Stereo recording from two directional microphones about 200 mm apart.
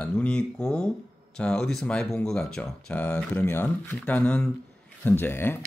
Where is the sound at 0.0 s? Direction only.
5° left (ahead or behind).